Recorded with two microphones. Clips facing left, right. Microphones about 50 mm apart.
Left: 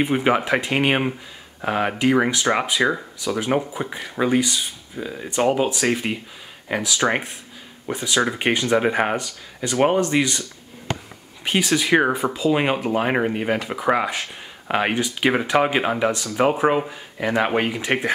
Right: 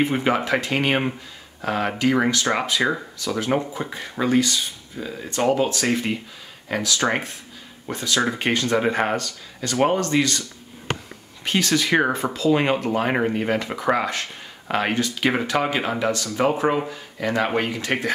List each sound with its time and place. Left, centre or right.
0.0 s speech: centre
11.4 s speech: centre